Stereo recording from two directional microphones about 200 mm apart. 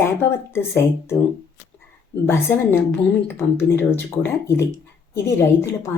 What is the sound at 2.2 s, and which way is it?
Speech, 10° left (ahead or behind).